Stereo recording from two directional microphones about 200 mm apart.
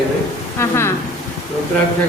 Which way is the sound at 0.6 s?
10° left (ahead or behind).